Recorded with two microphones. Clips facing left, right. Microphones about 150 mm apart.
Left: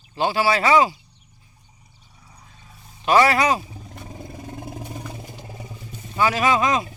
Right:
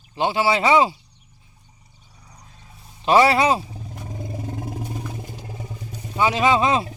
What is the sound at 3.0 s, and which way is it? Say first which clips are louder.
Speech: right 1 dB; 25° right (ahead or behind).